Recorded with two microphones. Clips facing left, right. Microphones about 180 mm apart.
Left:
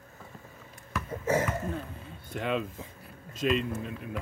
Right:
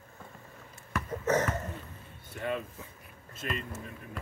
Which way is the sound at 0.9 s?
10° left (ahead or behind).